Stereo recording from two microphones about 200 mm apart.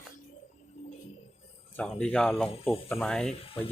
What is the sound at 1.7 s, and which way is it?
Speech, 5° left (ahead or behind).